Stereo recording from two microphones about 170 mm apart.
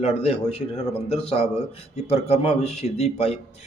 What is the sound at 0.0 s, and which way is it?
A man's voice, 35° left (ahead or behind).